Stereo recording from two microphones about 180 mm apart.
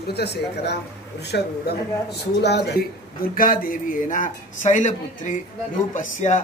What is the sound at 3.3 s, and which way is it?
A man's voice, 50° left (ahead or behind).